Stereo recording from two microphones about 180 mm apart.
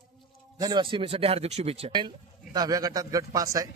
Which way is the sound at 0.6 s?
25° right (ahead or behind).